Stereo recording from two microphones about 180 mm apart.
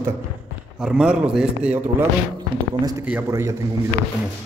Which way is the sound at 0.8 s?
5° right (ahead or behind).